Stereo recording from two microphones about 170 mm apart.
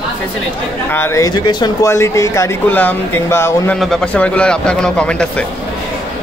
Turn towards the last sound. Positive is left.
turn(degrees=5)  # may be behind; listen again after turning